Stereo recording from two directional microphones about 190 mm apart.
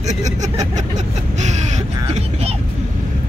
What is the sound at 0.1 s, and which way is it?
Vehicle, 40° right (ahead or behind).